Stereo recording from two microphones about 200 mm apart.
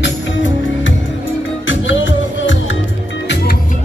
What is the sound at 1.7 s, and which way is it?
Music, 70° left (ahead or behind).